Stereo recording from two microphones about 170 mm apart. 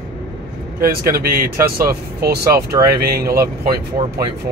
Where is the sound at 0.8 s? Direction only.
60° right (ahead or behind).